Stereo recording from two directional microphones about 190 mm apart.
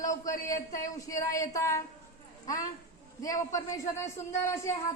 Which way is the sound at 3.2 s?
15° left (ahead or behind).